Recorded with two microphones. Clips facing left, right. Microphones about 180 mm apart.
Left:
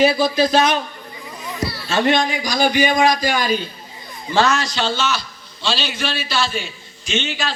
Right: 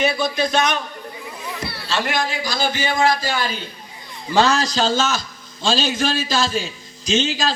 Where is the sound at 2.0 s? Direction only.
20° left (ahead or behind).